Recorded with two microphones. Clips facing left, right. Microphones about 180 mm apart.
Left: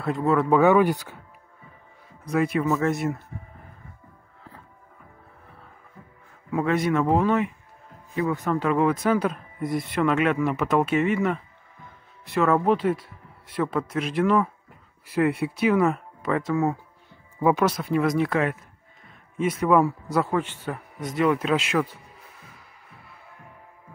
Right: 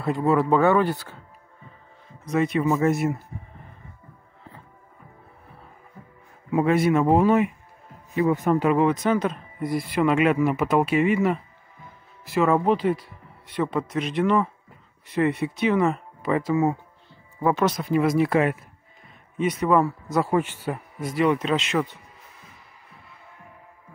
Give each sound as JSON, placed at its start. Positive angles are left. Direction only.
{"t": 0.0, "sound": "speech", "side_deg": -5}
{"t": 0.5, "sound": "speech", "side_deg": 10}
{"t": 2.3, "sound": "speech", "side_deg": 5}
{"t": 6.5, "sound": "speech", "side_deg": -10}
{"t": 9.0, "sound": "speech", "side_deg": 5}
{"t": 19.0, "sound": "a sound", "side_deg": 0}
{"t": 20.2, "sound": "speech", "side_deg": -10}